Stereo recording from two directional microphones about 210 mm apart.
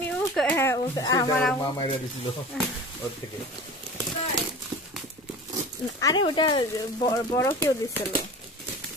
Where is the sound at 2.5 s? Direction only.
5° left (ahead or behind).